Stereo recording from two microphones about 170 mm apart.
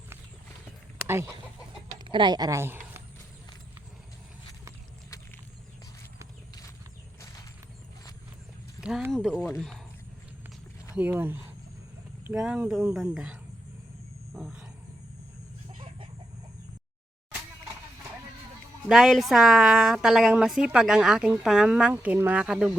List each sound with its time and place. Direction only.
1.0 s speech: 15° right (ahead or behind)
2.0 s speech: 30° right (ahead or behind); by 3.0 s 15° right (ahead or behind)
8.8 s speech: 5° right (ahead or behind)
10.9 s speech: 10° right (ahead or behind)
14.3 s wild animals: 5° right (ahead or behind)
18.9 s speech: 5° right (ahead or behind)